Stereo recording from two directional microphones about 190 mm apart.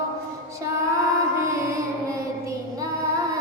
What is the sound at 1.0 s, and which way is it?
Music, 15° right (ahead or behind).